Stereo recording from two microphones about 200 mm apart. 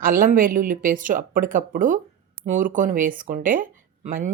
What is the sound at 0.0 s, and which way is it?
Speech, 45° right (ahead or behind).